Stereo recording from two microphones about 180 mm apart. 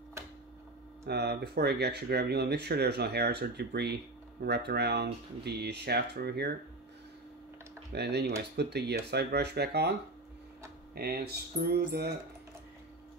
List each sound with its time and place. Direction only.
1.0 s speech: 65° right (ahead or behind)
7.9 s speech: 65° right (ahead or behind)
11.0 s speech: 60° right (ahead or behind)